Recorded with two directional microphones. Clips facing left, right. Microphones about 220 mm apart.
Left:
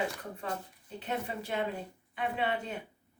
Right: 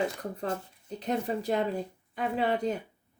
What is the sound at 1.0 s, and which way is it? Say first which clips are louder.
Speech: right 6 dB; 40° right (ahead or behind).